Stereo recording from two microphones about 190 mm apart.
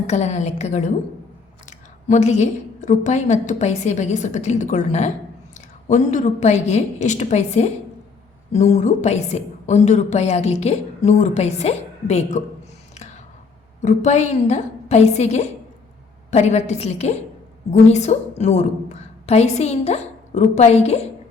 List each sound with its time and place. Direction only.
0.1 s a woman's voice: 35° left (ahead or behind)
2.0 s a woman's voice: 40° left (ahead or behind)
13.8 s a woman's voice: 40° left (ahead or behind)